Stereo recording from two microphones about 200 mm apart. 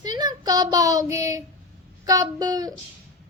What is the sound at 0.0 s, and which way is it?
Child singing, 20° right (ahead or behind).